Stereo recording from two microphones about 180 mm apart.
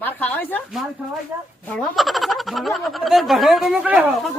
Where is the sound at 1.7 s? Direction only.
Centre (ahead or behind).